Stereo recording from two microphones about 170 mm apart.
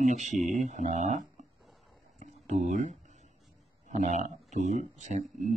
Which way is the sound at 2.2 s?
45° right (ahead or behind).